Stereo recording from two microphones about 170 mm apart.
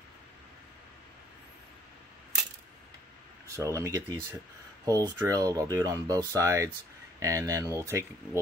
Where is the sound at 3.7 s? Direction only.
20° right (ahead or behind).